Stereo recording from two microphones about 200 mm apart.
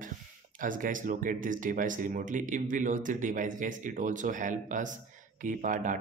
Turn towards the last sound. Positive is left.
turn(degrees=-40)  # may be behind; listen again after turning